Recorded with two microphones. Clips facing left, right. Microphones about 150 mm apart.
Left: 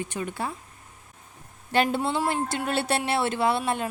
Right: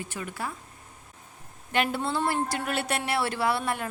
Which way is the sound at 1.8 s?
20° left (ahead or behind).